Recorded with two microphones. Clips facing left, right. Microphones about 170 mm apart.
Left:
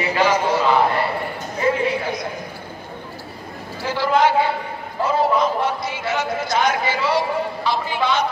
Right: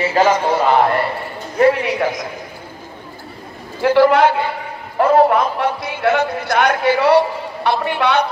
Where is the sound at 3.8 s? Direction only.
60° right (ahead or behind).